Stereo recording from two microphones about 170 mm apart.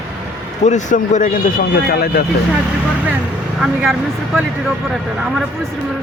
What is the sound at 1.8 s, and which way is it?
Speech, 65° left (ahead or behind).